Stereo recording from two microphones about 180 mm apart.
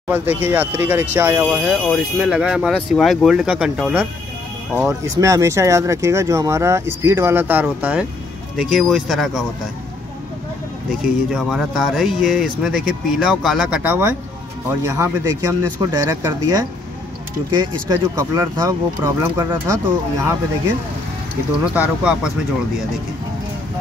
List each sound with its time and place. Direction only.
0.1 s speech: 10° right (ahead or behind)
1.7 s speech: centre (ahead or behind)
11.3 s speech: centre (ahead or behind)
21.7 s speech: 5° right (ahead or behind)